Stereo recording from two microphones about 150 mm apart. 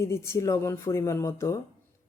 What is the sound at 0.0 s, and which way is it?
Speech, 15° left (ahead or behind).